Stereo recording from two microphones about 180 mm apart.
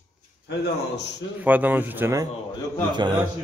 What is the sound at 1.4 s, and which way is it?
Speech, 10° right (ahead or behind).